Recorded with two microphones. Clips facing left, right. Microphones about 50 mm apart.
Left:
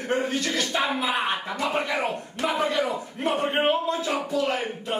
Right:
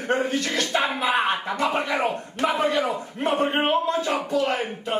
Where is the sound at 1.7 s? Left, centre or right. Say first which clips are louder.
Right 2 dB; centre.